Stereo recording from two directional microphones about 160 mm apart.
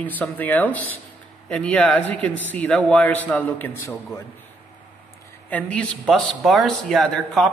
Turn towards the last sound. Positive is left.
turn(degrees=0)  # may be behind; listen again after turning